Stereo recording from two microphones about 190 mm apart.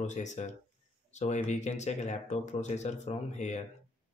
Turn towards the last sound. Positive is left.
turn(degrees=35)  # may be behind; listen again after turning